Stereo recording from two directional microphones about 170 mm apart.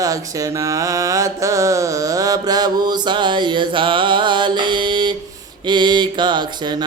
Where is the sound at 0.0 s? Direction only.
20° right (ahead or behind).